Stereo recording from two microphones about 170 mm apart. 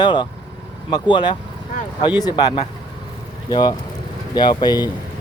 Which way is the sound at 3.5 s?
25° left (ahead or behind).